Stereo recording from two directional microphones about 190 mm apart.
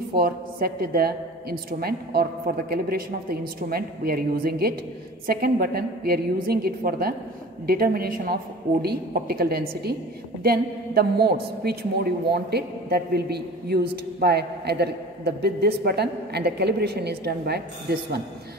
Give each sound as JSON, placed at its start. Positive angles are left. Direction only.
{"t": 0.1, "sound": "a woman's voice", "side_deg": -55}